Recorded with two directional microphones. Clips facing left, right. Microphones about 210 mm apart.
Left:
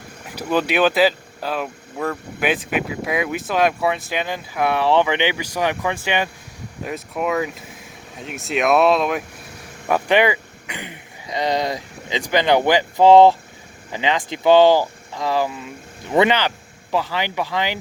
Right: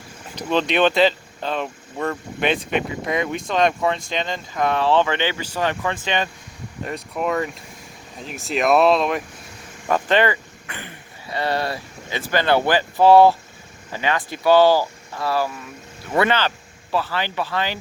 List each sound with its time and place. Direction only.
0.3 s speech: 5° left (ahead or behind)
9.9 s speech: 10° left (ahead or behind)